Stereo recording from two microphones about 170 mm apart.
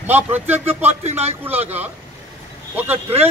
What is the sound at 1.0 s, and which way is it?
Speech, 40° right (ahead or behind).